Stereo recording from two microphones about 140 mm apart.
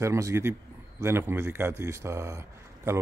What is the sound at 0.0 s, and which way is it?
A man's voice, 20° right (ahead or behind).